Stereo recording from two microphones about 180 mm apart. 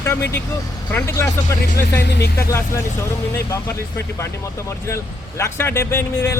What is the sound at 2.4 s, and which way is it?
Speech, 15° left (ahead or behind).